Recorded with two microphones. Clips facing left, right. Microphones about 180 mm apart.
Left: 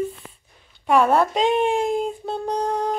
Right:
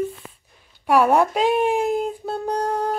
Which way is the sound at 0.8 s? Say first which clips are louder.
Right 1 dB; 10° right (ahead or behind).